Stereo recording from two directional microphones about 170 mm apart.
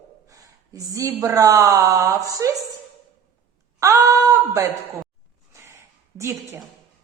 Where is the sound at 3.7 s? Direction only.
20° right (ahead or behind).